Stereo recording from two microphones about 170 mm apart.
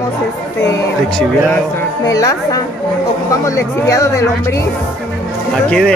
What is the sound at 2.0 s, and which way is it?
Speech, 20° left (ahead or behind).